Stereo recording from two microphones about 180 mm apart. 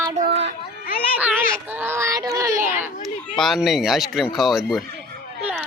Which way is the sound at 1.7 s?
10° right (ahead or behind).